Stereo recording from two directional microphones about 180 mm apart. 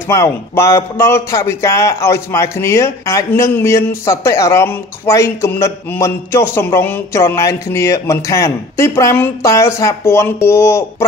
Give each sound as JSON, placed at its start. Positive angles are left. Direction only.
{"t": 0.1, "sound": "speech", "side_deg": 15}